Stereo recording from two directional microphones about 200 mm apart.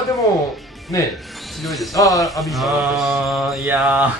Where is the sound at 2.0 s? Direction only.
15° left (ahead or behind).